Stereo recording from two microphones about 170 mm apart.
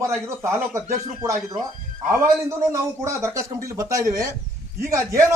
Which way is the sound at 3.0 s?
15° right (ahead or behind).